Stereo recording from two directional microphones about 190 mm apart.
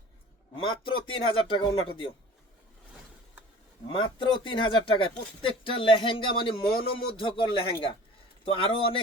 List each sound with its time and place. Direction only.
0.5 s speech: 25° left (ahead or behind)
3.9 s speech: 25° left (ahead or behind)
8.4 s speech: 30° left (ahead or behind)